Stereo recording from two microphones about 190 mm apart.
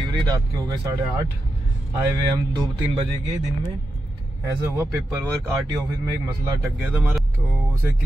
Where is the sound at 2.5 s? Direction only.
25° right (ahead or behind).